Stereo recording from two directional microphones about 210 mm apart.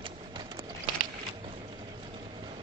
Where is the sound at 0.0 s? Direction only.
20° right (ahead or behind).